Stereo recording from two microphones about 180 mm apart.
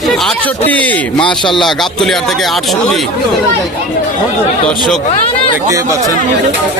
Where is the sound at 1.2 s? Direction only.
25° left (ahead or behind).